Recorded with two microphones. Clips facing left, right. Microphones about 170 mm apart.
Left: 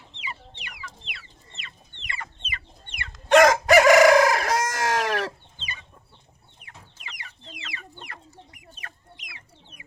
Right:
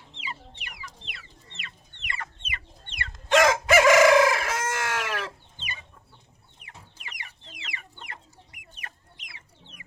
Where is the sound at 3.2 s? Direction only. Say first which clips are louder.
Left 4 dB; 45° left (ahead or behind).